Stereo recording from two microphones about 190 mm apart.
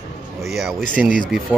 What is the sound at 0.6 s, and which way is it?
Speech, centre (ahead or behind).